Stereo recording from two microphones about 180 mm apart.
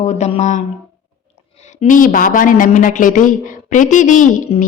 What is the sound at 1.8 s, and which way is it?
Speech, 50° left (ahead or behind).